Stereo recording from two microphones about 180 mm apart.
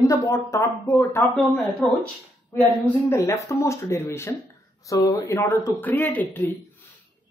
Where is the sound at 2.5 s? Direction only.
10° left (ahead or behind).